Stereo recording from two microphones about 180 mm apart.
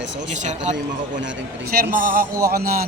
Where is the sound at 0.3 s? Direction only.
40° right (ahead or behind).